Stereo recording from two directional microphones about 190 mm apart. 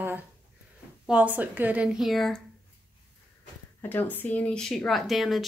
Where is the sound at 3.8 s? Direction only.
10° left (ahead or behind).